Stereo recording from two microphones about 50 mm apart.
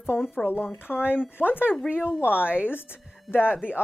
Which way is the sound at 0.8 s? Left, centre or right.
Left.